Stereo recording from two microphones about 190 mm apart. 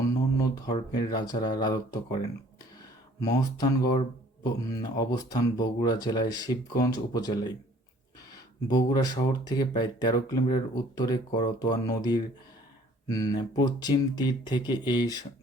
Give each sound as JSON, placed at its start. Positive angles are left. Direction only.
{"t": 0.3, "sound": "speech", "side_deg": 20}